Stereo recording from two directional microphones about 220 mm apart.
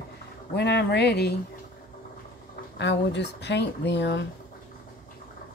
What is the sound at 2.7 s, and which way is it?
A woman's voice, 50° left (ahead or behind).